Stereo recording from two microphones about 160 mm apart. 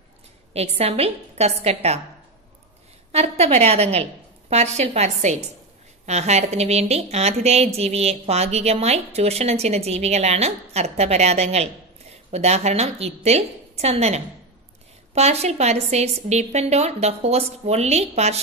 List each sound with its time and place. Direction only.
0.5 s a woman's voice: 40° right (ahead or behind)
3.1 s a woman's voice: 40° right (ahead or behind)